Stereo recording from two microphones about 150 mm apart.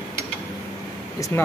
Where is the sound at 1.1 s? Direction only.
20° left (ahead or behind).